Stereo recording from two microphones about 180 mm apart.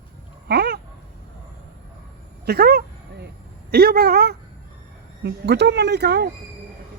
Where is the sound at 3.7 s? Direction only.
60° right (ahead or behind).